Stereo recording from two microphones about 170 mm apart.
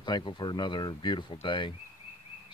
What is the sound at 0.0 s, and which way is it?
Speech, 25° left (ahead or behind).